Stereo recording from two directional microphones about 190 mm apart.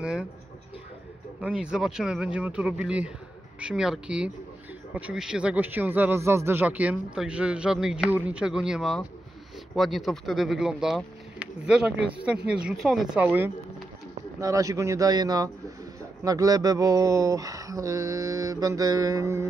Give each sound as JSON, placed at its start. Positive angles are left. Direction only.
{"t": 0.0, "sound": "speech", "side_deg": -5}
{"t": 1.4, "sound": "a man's voice", "side_deg": -5}